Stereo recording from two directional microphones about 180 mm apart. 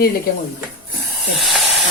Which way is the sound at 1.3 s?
Centre (ahead or behind).